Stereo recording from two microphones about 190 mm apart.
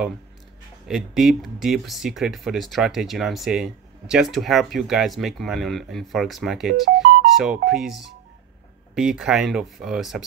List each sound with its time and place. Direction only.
0.8 s speech: centre (ahead or behind)
6.7 s speech: 55° right (ahead or behind)
7.3 s speech: centre (ahead or behind)